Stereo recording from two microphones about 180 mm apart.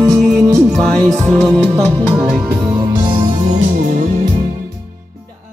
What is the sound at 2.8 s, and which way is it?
Music, 25° right (ahead or behind).